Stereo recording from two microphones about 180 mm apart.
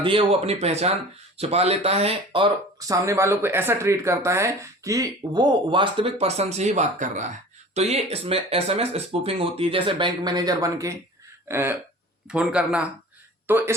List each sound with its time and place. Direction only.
0.0 s a man's voice: 30° right (ahead or behind); by 13.7 s 10° right (ahead or behind)